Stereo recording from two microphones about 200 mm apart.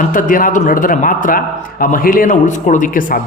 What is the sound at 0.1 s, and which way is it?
A man's voice, 45° left (ahead or behind).